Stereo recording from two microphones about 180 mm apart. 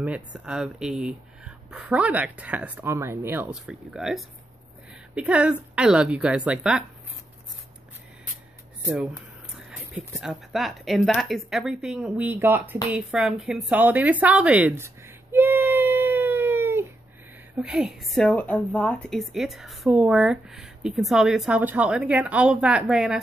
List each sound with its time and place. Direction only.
0.0 s a woman's voice: 5° right (ahead or behind)
9.6 s a woman's voice: 5° right (ahead or behind)
15.3 s baby cry: 10° right (ahead or behind)
17.6 s a woman's voice: 5° right (ahead or behind)